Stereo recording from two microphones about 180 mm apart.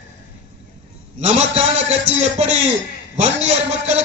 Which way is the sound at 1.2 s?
35° right (ahead or behind).